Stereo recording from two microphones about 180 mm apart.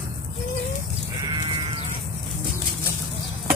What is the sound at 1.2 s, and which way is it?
Sheep, 25° right (ahead or behind).